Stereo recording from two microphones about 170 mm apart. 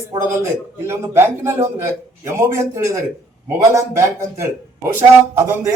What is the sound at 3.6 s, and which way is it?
A man's voice, 20° right (ahead or behind).